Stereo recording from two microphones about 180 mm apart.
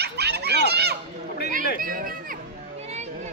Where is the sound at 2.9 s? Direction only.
40° right (ahead or behind).